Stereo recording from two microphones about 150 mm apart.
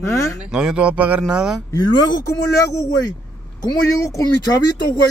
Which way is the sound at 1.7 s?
30° left (ahead or behind).